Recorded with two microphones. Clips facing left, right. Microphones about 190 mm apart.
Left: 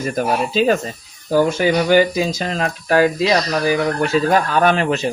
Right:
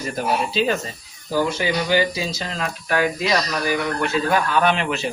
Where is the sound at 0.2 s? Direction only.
45° left (ahead or behind).